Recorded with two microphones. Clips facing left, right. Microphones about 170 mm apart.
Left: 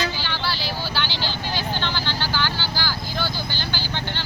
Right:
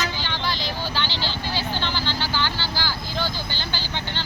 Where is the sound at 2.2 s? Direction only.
15° right (ahead or behind).